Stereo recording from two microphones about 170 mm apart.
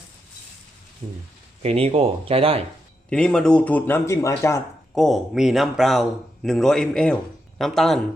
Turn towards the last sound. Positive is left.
turn(degrees=0)  # may be behind; listen again after turning